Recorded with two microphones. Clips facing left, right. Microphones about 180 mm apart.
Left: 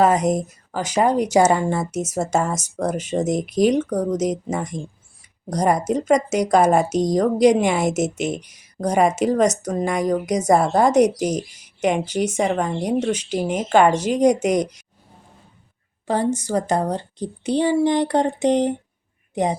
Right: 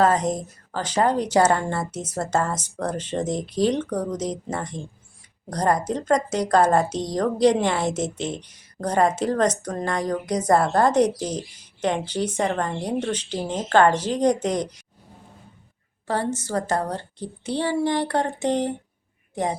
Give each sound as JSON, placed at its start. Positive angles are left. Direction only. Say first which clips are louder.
{"t": 0.3, "sound": "a woman's voice", "louder": "left 5 dB", "side_deg": 10}
{"t": 16.0, "sound": "a woman's voice", "louder": "left 4 dB", "side_deg": 15}